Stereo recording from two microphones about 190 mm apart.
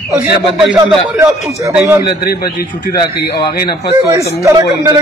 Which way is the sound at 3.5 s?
55° left (ahead or behind).